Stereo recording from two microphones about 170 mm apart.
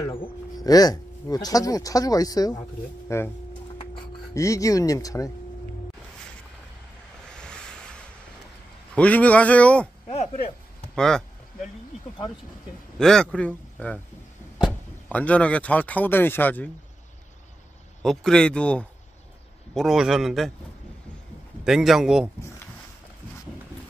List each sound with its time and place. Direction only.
0.2 s a man's voice: 20° left (ahead or behind)
4.3 s speech: 20° left (ahead or behind)
7.2 s vehicle: 5° left (ahead or behind)
8.9 s a man's voice: 10° left (ahead or behind)
10.0 s speech: 40° left (ahead or behind)
11.0 s speech: 5° left (ahead or behind)
13.0 s a man's voice: 5° left (ahead or behind)
18.0 s speech: 5° left (ahead or behind)
21.6 s speech: 5° right (ahead or behind)